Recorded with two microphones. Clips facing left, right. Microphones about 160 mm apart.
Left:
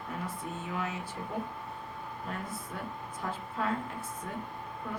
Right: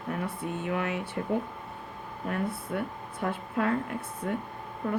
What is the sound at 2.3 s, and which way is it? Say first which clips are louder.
Speech: right 10 dB; 65° right (ahead or behind).